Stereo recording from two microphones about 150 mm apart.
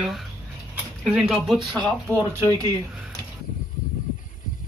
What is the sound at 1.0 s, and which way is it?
Speech, 5° right (ahead or behind).